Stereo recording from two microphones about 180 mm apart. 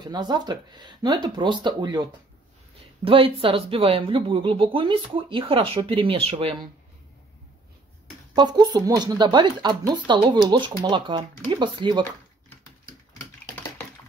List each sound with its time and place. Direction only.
0.0 s speech: 25° right (ahead or behind)
8.4 s speech: 25° right (ahead or behind)